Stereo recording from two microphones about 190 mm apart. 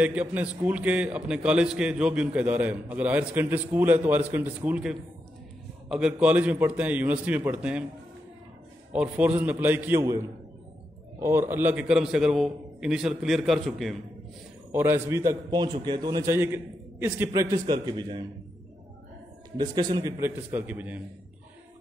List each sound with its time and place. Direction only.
0.0 s a man's voice: 5° right (ahead or behind)
8.9 s a man's voice: 5° right (ahead or behind)
14.7 s a man's voice: 10° right (ahead or behind)
19.5 s a man's voice: 20° right (ahead or behind)